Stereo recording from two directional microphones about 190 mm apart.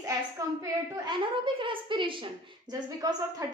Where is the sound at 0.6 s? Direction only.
20° right (ahead or behind).